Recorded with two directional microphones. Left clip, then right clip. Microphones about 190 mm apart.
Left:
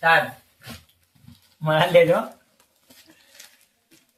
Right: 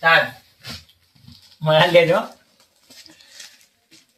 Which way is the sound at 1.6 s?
30° right (ahead or behind).